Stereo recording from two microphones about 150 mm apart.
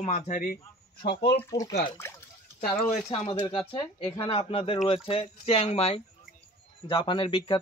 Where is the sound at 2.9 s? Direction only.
45° left (ahead or behind).